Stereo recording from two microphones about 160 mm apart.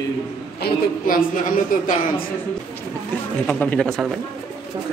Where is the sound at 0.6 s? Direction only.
70° left (ahead or behind).